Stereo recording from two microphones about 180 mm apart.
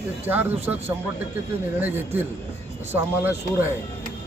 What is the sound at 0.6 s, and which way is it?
Speech, 10° right (ahead or behind).